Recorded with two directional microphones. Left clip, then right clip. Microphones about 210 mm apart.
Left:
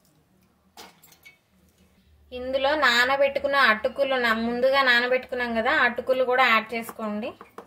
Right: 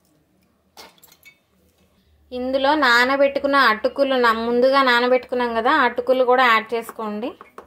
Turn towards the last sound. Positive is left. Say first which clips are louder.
# right 4 dB
turn(degrees=-30)  # may be behind; listen again after turning